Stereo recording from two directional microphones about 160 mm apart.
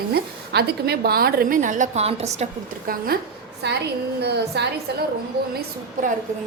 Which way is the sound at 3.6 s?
90° right.